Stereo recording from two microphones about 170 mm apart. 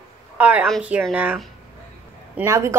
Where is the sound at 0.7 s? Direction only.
5° right (ahead or behind).